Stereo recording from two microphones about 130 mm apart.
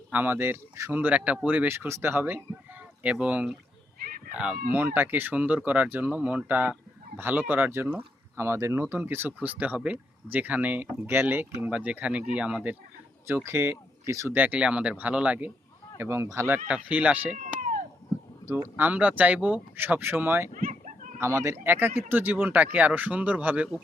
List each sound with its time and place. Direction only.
0.1 s speech: 15° right (ahead or behind)
16.6 s speech: 10° right (ahead or behind)
17.6 s cat: 85° right
18.4 s speech: 15° right (ahead or behind)
20.7 s a sound: 75° right (ahead or behind)
21.2 s speech: 20° right (ahead or behind)